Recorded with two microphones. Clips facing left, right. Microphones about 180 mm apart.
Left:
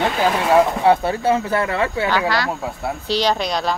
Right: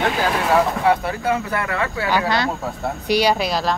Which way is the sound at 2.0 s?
15° right (ahead or behind).